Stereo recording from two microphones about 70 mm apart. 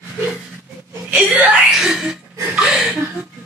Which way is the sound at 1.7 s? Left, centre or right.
Centre.